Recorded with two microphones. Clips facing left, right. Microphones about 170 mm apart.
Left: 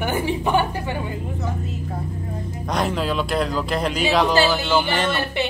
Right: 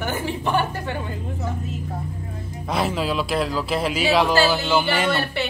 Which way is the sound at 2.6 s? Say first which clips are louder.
Even; 5° right (ahead or behind).